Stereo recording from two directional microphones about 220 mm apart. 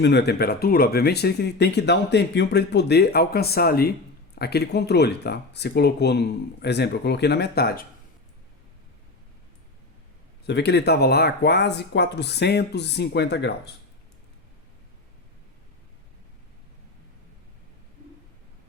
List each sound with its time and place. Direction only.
0.0 s speech: 50° left (ahead or behind)
10.4 s speech: 50° left (ahead or behind)